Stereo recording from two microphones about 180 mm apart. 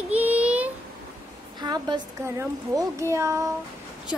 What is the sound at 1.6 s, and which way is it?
A woman's voice, 25° right (ahead or behind).